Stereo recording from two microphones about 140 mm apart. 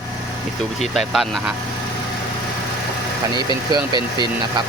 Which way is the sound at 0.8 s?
Centre (ahead or behind).